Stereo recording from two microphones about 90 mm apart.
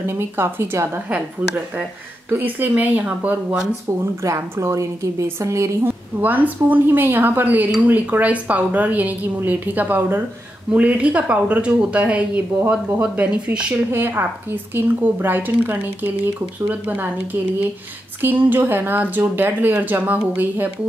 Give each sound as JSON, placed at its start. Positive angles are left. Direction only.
{"t": 0.0, "sound": "a woman's voice", "side_deg": -30}
{"t": 4.0, "sound": "a woman's voice", "side_deg": -35}
{"t": 6.2, "sound": "a woman's voice", "side_deg": -20}
{"t": 18.2, "sound": "a woman's voice", "side_deg": -20}